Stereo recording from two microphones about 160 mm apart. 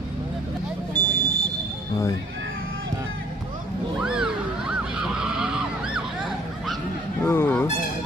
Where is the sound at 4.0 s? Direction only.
5° right (ahead or behind).